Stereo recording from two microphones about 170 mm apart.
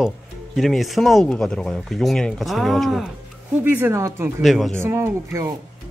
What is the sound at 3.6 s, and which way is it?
Speech, 10° right (ahead or behind).